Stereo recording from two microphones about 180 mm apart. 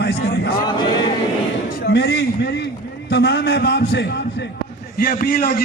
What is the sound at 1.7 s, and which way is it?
A man's voice, 55° left (ahead or behind).